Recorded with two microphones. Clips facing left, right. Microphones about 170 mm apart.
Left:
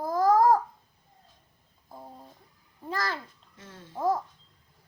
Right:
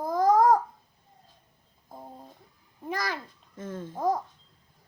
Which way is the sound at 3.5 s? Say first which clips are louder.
Right 7 dB; 50° right (ahead or behind).